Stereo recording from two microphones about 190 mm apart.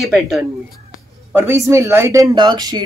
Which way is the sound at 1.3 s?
15° right (ahead or behind).